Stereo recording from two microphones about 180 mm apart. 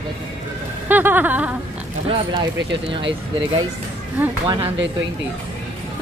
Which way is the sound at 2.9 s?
30° right (ahead or behind).